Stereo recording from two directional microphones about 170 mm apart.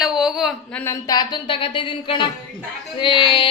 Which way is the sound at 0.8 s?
20° left (ahead or behind).